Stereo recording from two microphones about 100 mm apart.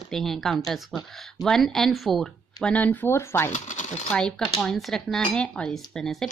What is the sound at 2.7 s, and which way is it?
Speech, 20° left (ahead or behind).